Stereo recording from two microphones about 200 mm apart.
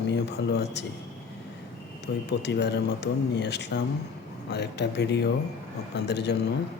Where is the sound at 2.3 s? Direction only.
55° left (ahead or behind).